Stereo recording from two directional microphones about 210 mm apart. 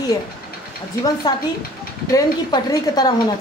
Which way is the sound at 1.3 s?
15° left (ahead or behind).